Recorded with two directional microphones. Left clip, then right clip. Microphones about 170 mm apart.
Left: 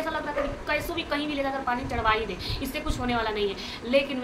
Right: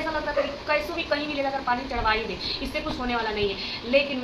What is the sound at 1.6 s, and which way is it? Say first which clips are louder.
Speech: even; 15° left (ahead or behind).